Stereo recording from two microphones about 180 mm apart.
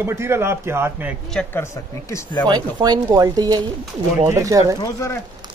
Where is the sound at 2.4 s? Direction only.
25° right (ahead or behind).